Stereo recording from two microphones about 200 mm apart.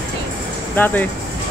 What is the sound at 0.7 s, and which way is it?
Speech, 10° left (ahead or behind).